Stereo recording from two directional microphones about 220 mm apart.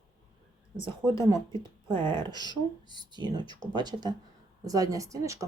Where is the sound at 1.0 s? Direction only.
15° right (ahead or behind).